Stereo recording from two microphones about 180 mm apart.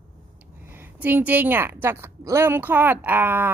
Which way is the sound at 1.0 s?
10° right (ahead or behind).